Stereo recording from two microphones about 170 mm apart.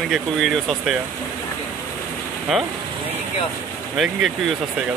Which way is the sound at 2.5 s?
Centre (ahead or behind).